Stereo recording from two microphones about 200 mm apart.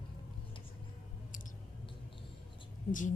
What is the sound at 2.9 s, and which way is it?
Speech, 40° left (ahead or behind).